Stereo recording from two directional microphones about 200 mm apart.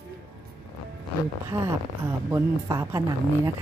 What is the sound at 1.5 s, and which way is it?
Speech, 15° right (ahead or behind).